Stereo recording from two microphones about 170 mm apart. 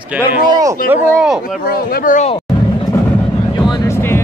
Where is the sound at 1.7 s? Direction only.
60° left (ahead or behind).